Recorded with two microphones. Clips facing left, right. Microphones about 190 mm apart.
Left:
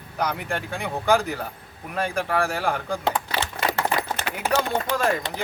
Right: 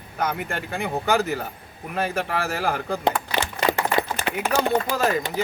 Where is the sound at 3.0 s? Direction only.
15° right (ahead or behind).